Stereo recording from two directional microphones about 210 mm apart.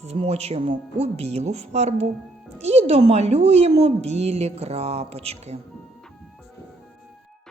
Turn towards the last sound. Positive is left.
turn(degrees=-30)  # may be behind; listen again after turning